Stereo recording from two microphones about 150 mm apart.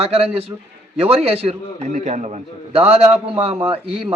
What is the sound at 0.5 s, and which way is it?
Speech, 25° right (ahead or behind).